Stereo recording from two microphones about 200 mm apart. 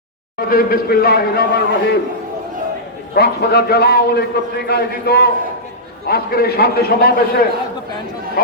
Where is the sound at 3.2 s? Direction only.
50° left (ahead or behind).